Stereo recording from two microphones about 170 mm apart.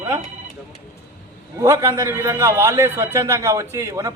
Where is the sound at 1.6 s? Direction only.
15° right (ahead or behind).